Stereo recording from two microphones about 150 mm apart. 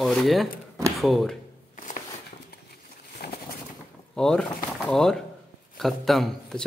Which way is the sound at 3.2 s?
90° left.